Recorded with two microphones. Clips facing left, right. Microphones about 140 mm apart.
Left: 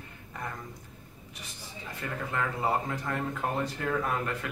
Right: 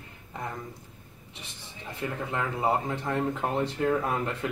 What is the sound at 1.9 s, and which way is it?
Speech, 25° right (ahead or behind).